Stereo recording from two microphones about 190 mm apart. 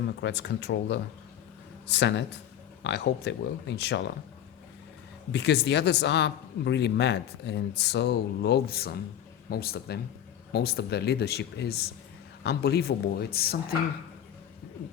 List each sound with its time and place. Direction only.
0.0 s speech: 65° left (ahead or behind)
5.3 s speech: 65° left (ahead or behind)